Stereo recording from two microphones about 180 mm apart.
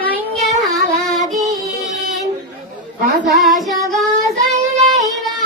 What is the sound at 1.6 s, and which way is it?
Music, centre (ahead or behind).